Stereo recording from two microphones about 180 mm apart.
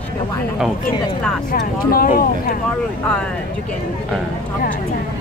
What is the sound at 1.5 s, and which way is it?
Speech, 55° left (ahead or behind).